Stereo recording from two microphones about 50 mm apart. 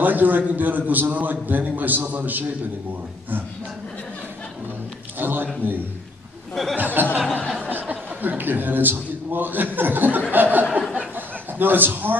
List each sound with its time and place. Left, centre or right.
0.0 s a man's voice: right
5.2 s a man's voice: right
6.5 s speech: centre
6.8 s a man's voice: right
8.2 s a man's voice: right
10.3 s a sound: right
11.1 s chuckle: right